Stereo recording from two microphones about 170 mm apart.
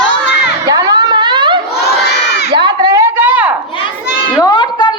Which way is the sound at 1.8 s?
75° left (ahead or behind).